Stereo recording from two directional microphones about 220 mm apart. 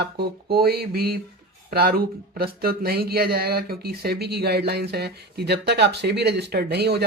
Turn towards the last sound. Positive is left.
turn(degrees=-45)  # may be behind; listen again after turning